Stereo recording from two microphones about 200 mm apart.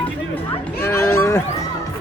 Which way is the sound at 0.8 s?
10° left (ahead or behind).